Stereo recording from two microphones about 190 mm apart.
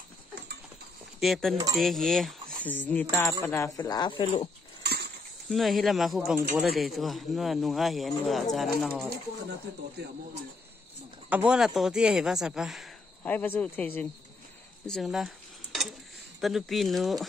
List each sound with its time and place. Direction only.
1.2 s speech: centre (ahead or behind); by 4.5 s 25° left (ahead or behind)
4.8 s livestock: 55° right (ahead or behind)
5.5 s speech: centre (ahead or behind)
10.0 s speech: 60° right (ahead or behind)
11.2 s speech: 5° right (ahead or behind)
13.2 s speech: 10° left (ahead or behind)
14.9 s cutlery: centre (ahead or behind)
16.3 s speech: centre (ahead or behind)